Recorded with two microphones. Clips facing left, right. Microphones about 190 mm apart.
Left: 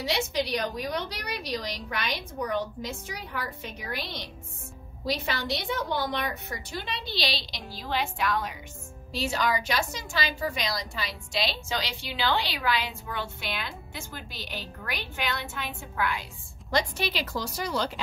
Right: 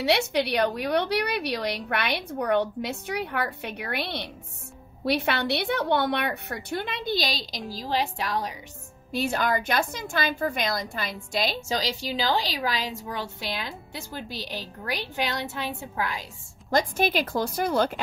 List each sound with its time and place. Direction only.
0.0 s a woman's voice: 65° right (ahead or behind); by 8.5 s 35° right (ahead or behind)
9.1 s a woman's voice: 55° right (ahead or behind); by 16.3 s 35° right (ahead or behind)
16.7 s a woman's voice: 50° right (ahead or behind)